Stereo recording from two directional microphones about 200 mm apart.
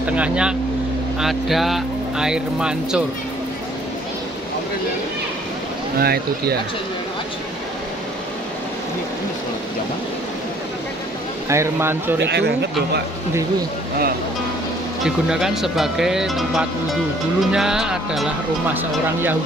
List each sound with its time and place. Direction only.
0.0 s speech: 5° right (ahead or behind)
5.9 s speech: 50° right (ahead or behind)
11.4 s speech: 15° right (ahead or behind)
12.2 s speech: 55° right (ahead or behind)
15.0 s speech: 5° right (ahead or behind)